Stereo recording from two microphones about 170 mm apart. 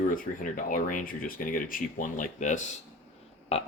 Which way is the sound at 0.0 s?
55° left (ahead or behind).